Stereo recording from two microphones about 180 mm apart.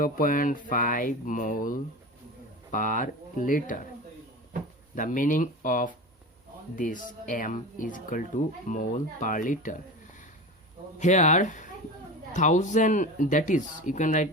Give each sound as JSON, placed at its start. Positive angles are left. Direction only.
{"t": 0.0, "sound": "speech", "side_deg": 50}
{"t": 4.9, "sound": "speech", "side_deg": 45}
{"t": 11.0, "sound": "speech", "side_deg": 40}